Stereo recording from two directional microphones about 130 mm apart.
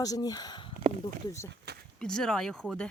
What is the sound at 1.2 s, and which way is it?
Speech, 25° left (ahead or behind).